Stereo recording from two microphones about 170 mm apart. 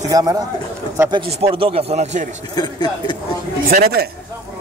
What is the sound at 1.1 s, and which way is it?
Speech, 35° right (ahead or behind).